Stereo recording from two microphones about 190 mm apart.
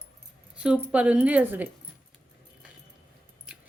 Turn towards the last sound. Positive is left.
turn(degrees=-5)  # may be behind; listen again after turning